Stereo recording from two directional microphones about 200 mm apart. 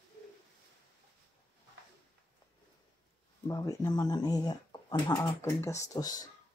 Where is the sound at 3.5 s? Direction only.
20° left (ahead or behind).